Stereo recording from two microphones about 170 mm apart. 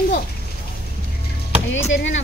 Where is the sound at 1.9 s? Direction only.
90° left.